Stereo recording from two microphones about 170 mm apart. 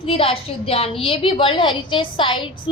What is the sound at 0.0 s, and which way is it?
A woman's voice, 35° left (ahead or behind).